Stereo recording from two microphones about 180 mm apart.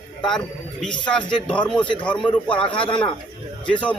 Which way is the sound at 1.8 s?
25° left (ahead or behind).